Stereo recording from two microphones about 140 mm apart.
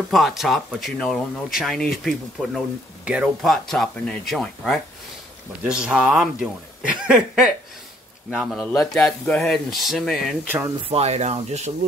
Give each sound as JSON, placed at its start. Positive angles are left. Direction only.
{"t": 0.1, "sound": "speech", "side_deg": 0}
{"t": 5.6, "sound": "speech", "side_deg": -5}
{"t": 10.9, "sound": "speech", "side_deg": -50}